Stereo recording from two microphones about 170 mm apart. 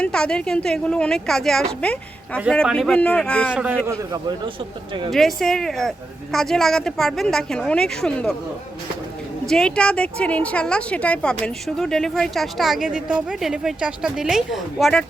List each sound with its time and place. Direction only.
0.0 s a woman's voice: 5° left (ahead or behind)
3.5 s speech: 5° right (ahead or behind)
3.8 s a man's voice: 25° right (ahead or behind)
5.1 s a woman's voice: centre (ahead or behind)
9.5 s a woman's voice: 5° left (ahead or behind)